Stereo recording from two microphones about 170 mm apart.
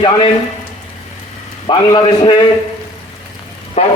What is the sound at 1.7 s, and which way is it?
Speech, 30° left (ahead or behind).